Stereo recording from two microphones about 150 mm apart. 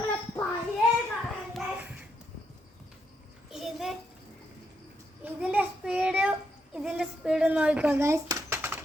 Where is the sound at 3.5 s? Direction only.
Centre (ahead or behind).